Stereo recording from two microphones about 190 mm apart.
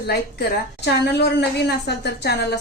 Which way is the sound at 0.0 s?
60° left (ahead or behind).